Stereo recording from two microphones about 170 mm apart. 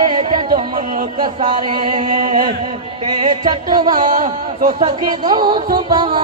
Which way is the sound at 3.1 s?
25° right (ahead or behind).